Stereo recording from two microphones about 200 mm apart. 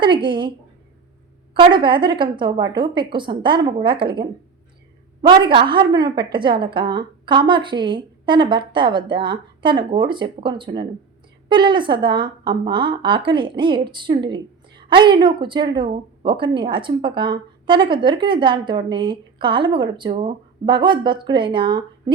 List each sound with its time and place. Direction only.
0.0 s a woman's voice: 25° right (ahead or behind)
1.5 s a woman's voice: 25° right (ahead or behind)